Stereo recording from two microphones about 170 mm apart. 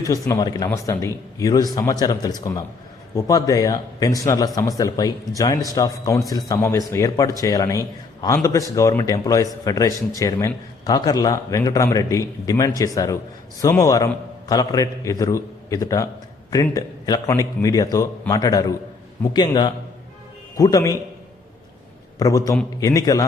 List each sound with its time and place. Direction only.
0.0 s a man's voice: 20° left (ahead or behind)
22.2 s a man's voice: 20° left (ahead or behind)